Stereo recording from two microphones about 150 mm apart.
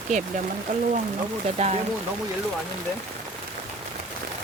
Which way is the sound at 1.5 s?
45° right (ahead or behind).